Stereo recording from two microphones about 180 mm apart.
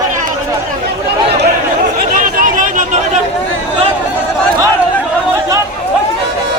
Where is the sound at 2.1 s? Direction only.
50° right (ahead or behind).